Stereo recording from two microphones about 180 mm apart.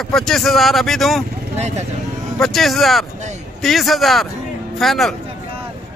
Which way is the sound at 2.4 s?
Centre (ahead or behind).